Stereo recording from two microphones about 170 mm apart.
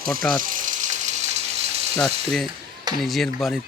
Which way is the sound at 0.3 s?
50° right (ahead or behind).